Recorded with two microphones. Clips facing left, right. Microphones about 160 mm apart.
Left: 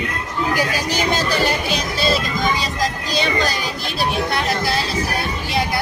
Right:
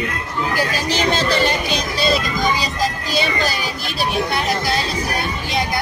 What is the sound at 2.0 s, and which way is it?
Music, centre (ahead or behind).